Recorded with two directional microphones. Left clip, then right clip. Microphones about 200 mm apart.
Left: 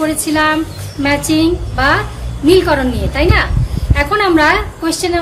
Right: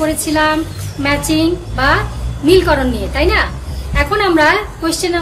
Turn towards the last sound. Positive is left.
turn(degrees=20)  # may be behind; listen again after turning